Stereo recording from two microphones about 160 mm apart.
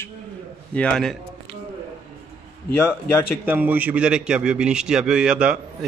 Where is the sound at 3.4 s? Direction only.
10° right (ahead or behind).